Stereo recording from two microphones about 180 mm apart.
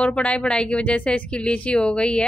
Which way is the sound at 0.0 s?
5° left (ahead or behind).